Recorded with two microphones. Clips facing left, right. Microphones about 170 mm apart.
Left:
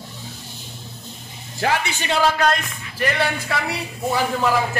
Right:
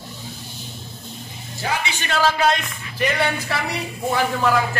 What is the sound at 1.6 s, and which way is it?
Speech, 75° left (ahead or behind).